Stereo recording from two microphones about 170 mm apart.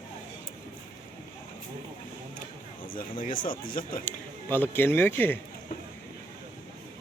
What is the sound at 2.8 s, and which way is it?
Speech, 55° left (ahead or behind).